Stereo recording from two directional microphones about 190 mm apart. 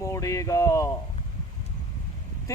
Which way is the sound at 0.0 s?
15° left (ahead or behind).